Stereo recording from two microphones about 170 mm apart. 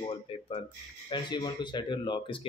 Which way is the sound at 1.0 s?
25° left (ahead or behind).